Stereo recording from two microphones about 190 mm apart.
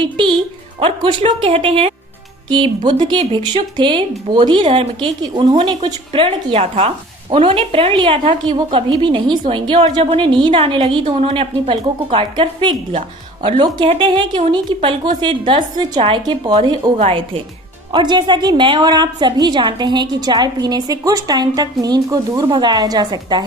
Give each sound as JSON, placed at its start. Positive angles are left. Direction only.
{"t": 0.0, "sound": "speech", "side_deg": -25}